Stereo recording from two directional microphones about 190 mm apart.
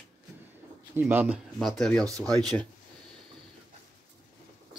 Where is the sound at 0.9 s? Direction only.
10° right (ahead or behind).